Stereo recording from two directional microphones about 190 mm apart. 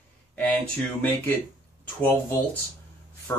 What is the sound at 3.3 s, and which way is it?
Speech, 10° left (ahead or behind).